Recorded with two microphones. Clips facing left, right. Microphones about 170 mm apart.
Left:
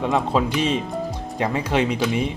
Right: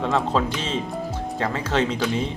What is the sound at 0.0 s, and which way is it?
Speech, 10° left (ahead or behind).